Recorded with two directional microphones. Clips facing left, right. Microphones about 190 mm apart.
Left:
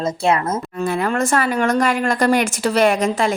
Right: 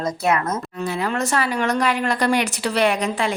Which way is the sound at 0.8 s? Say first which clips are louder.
Left 5 dB; 50° left (ahead or behind).